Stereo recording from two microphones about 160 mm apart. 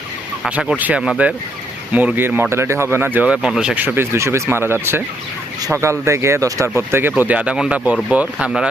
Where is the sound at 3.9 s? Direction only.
15° right (ahead or behind).